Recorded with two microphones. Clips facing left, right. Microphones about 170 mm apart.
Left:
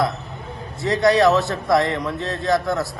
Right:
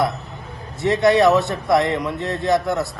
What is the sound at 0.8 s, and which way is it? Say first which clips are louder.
A man's voice: right 1 dB; 20° right (ahead or behind).